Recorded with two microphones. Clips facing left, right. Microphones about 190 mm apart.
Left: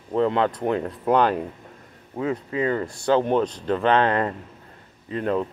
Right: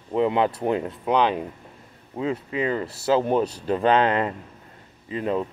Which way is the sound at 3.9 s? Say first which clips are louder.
Even; 20° right (ahead or behind).